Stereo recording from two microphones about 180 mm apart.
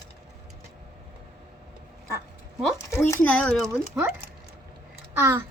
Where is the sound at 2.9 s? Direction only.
15° left (ahead or behind).